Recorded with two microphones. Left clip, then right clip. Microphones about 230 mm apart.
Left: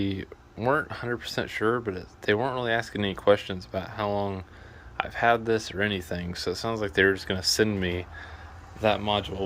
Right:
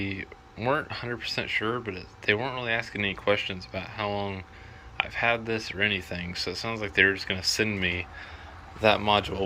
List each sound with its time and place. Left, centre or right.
0.0 s speech: left
8.8 s speech: centre